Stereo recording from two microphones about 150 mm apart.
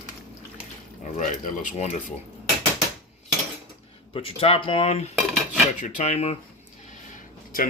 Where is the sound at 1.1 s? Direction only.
55° left (ahead or behind).